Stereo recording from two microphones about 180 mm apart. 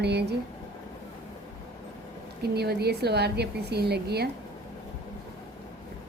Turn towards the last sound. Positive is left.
turn(degrees=-65)  # may be behind; listen again after turning